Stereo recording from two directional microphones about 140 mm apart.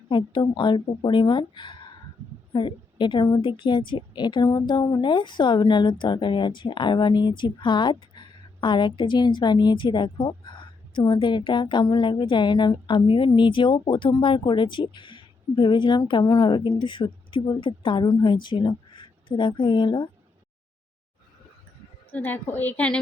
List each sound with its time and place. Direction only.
0.1 s a woman's voice: 35° left (ahead or behind)
22.1 s a woman's voice: 15° left (ahead or behind)